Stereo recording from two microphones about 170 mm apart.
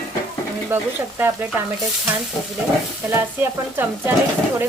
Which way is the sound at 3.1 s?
15° right (ahead or behind).